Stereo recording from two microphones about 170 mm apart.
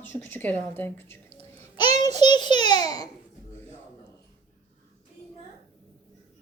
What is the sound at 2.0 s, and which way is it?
A child's voice, 25° left (ahead or behind).